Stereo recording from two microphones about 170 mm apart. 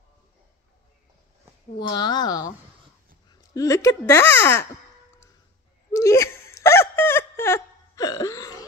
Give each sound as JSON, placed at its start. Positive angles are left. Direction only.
{"t": 1.8, "sound": "speech", "side_deg": 25}
{"t": 3.5, "sound": "speech", "side_deg": 20}
{"t": 5.9, "sound": "a sound", "side_deg": 15}